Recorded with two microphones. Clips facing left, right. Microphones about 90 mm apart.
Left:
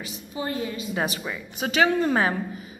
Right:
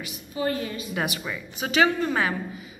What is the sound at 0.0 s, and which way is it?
A woman's voice, 30° left (ahead or behind).